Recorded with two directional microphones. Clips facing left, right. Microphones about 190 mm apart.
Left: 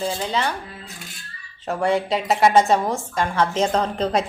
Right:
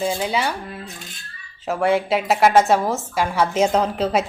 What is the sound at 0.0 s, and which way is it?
Speech, 10° right (ahead or behind).